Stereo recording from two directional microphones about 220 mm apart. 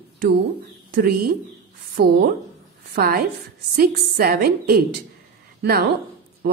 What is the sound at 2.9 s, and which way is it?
A woman's voice, 45° right (ahead or behind).